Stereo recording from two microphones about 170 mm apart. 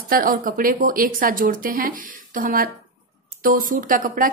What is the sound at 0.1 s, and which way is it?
A woman's voice, 55° right (ahead or behind).